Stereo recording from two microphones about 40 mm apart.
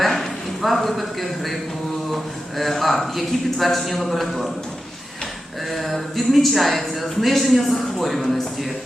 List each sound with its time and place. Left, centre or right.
0.0 s a sound: centre
2.1 s speech: centre
5.7 s speech: centre